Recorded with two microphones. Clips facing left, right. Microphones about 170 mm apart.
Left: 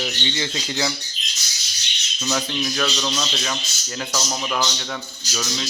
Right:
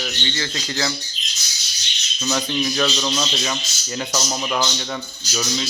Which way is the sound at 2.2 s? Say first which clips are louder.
Right 2 dB; 5° right (ahead or behind).